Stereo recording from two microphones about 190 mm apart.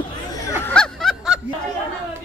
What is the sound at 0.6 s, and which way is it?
Snicker, 5° left (ahead or behind).